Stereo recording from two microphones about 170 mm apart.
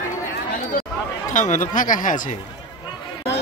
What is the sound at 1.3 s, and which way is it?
Speech, 45° left (ahead or behind).